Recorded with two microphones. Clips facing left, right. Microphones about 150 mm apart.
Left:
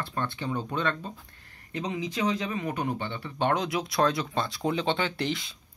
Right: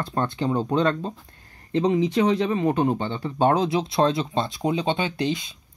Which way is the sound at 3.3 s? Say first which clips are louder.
Right 6 dB; 35° right (ahead or behind).